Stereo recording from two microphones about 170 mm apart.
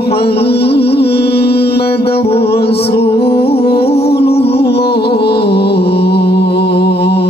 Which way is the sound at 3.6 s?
70° left (ahead or behind).